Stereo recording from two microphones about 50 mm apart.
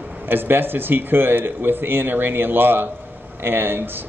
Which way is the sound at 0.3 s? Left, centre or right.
Right.